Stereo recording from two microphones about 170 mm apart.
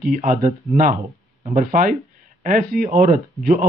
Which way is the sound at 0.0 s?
50° right (ahead or behind).